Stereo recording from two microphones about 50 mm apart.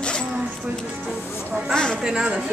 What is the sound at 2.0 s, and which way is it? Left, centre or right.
Speech, centre.